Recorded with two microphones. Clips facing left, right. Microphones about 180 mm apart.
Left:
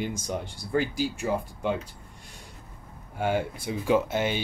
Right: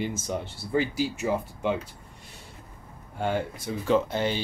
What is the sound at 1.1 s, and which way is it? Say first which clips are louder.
Speech: right 1 dB; 5° right (ahead or behind).